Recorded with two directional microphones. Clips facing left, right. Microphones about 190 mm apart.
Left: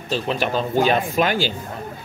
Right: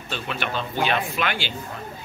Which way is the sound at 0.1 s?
35° left (ahead or behind).